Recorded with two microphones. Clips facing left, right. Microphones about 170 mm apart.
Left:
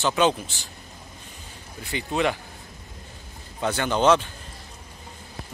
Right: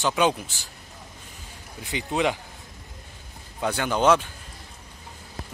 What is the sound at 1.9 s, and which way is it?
Speech, 15° right (ahead or behind).